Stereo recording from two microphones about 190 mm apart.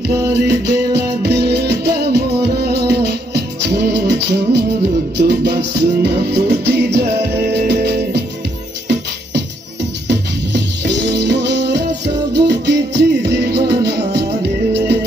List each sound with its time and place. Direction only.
0.5 s music: 60° right (ahead or behind)
10.0 s music: 60° right (ahead or behind)